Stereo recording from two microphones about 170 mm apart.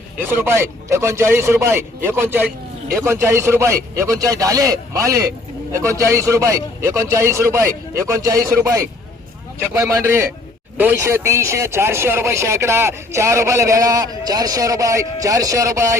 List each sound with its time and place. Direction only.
0.4 s speech: 15° right (ahead or behind)